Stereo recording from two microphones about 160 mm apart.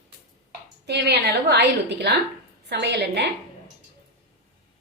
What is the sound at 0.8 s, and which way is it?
A woman's voice, 90° right.